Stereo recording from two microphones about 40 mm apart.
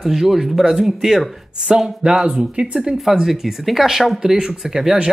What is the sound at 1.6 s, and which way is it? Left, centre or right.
Speech, right.